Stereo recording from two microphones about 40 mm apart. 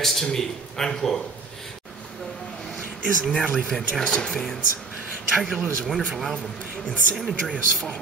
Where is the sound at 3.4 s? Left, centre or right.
Right.